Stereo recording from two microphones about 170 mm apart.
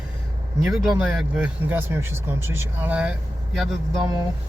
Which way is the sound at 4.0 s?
25° right (ahead or behind).